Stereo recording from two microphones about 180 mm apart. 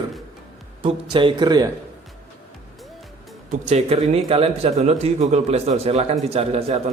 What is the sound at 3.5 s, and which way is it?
Speech, 40° right (ahead or behind).